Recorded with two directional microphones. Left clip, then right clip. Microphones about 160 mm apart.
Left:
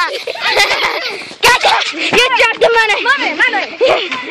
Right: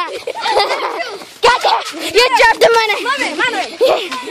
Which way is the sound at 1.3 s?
10° right (ahead or behind).